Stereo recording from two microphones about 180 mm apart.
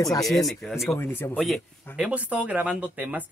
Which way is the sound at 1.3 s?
Centre (ahead or behind).